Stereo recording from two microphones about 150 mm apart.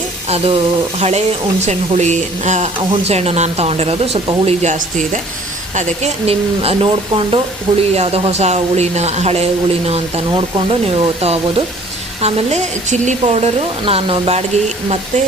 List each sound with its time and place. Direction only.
0.3 s speech: 40° right (ahead or behind)